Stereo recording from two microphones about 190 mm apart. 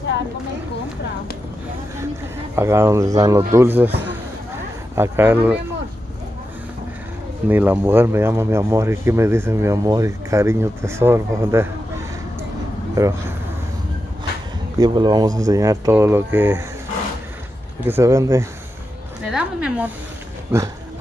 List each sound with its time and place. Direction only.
2.5 s speech: 15° right (ahead or behind)
4.9 s speech: 10° right (ahead or behind)
7.4 s speech: 10° right (ahead or behind)
13.0 s speech: 15° right (ahead or behind)
14.8 s speech: 20° right (ahead or behind)
17.8 s speech: 15° right (ahead or behind)